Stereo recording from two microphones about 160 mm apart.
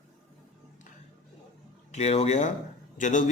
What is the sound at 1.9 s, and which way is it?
Speech, 40° left (ahead or behind).